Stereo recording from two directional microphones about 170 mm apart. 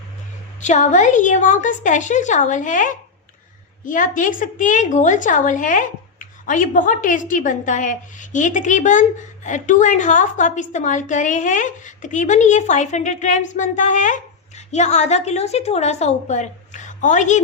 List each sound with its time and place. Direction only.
0.6 s a woman's voice: 45° left (ahead or behind)